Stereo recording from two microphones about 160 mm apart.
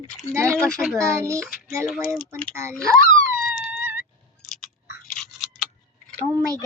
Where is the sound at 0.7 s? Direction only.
5° right (ahead or behind).